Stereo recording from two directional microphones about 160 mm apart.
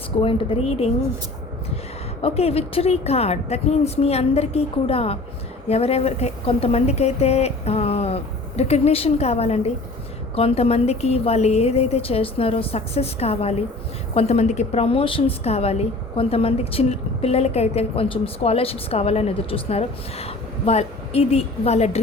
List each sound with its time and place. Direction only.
0.2 s a woman's voice: 35° left (ahead or behind)
2.2 s a woman's voice: 40° left (ahead or behind)